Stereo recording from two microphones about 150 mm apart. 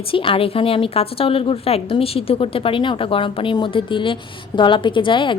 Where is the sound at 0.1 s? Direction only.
35° left (ahead or behind).